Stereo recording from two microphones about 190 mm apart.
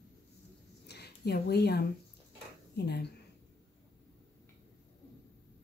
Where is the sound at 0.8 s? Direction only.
60° left (ahead or behind).